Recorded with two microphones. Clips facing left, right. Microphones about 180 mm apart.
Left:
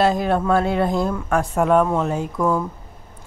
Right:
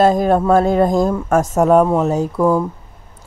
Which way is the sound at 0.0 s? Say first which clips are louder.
Right 5 dB; 45° right (ahead or behind).